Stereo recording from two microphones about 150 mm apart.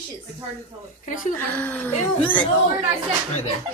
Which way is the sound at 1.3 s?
15° left (ahead or behind).